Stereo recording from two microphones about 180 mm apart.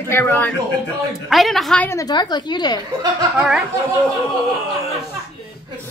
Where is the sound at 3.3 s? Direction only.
5° right (ahead or behind).